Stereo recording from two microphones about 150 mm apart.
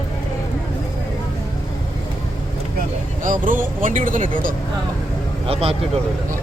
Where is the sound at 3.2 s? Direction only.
65° right (ahead or behind).